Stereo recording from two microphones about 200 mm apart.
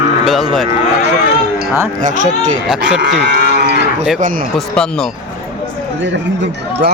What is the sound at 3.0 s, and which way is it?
Speech, 60° right (ahead or behind).